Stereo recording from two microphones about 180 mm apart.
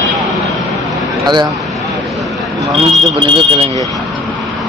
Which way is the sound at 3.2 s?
30° right (ahead or behind).